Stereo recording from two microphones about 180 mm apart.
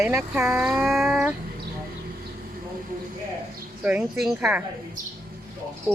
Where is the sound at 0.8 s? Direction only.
Centre (ahead or behind).